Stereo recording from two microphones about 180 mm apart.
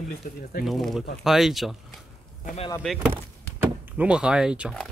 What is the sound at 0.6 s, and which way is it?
Speech, centre (ahead or behind).